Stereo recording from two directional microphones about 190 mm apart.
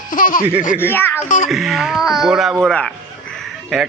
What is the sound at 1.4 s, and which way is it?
Speech, centre (ahead or behind).